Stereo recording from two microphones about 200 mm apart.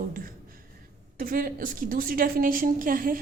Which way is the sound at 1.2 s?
45° right (ahead or behind).